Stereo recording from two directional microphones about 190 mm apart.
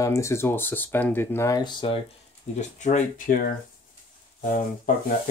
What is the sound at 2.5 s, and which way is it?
Speech, 35° left (ahead or behind).